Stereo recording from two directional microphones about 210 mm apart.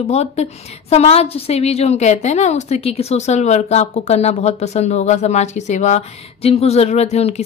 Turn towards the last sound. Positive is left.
turn(degrees=30)  # may be behind; listen again after turning